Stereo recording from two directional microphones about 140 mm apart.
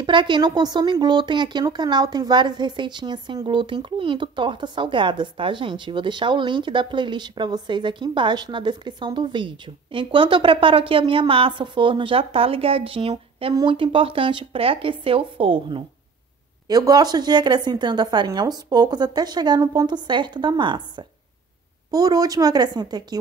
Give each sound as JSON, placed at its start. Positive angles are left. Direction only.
{"t": 0.0, "sound": "a woman's voice", "side_deg": -35}
{"t": 16.6, "sound": "a woman's voice", "side_deg": -30}